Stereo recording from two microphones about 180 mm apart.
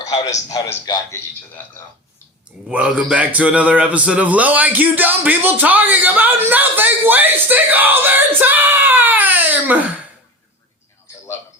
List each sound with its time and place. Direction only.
0.0 s a sound: 20° left (ahead or behind)
0.4 s a man's voice: 20° left (ahead or behind)
2.6 s a man's voice: 5° right (ahead or behind)